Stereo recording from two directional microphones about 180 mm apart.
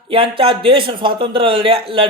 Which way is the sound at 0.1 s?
30° right (ahead or behind).